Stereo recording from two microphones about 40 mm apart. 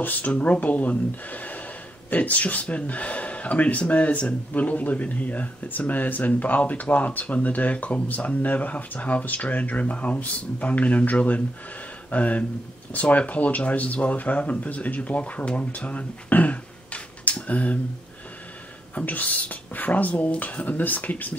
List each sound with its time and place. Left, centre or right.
0.0 s speech: left
18.9 s speech: left